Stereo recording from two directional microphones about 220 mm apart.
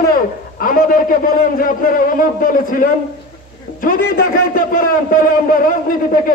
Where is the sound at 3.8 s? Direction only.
40° left (ahead or behind).